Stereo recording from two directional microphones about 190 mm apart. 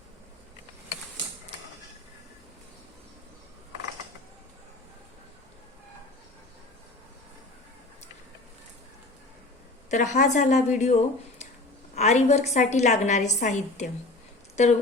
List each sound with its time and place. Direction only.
9.9 s a woman's voice: 40° left (ahead or behind)